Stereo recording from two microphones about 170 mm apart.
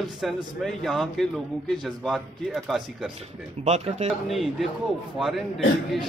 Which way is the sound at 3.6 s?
40° right (ahead or behind).